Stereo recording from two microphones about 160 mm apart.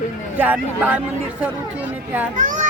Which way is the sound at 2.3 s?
55° right (ahead or behind).